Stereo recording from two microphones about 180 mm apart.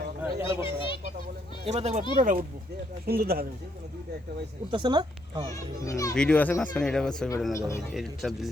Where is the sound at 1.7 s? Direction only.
35° right (ahead or behind).